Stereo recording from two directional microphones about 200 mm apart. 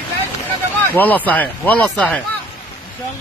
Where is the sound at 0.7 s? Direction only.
10° left (ahead or behind).